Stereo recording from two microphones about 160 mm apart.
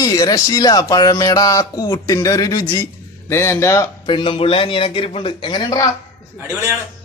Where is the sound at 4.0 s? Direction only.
30° left (ahead or behind).